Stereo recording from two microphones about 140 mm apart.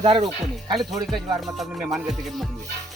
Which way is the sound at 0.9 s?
25° right (ahead or behind).